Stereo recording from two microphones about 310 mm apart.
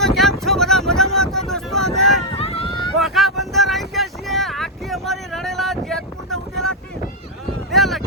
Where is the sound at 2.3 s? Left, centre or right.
Centre.